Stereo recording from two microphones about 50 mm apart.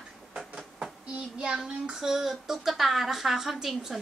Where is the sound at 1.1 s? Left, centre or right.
Centre.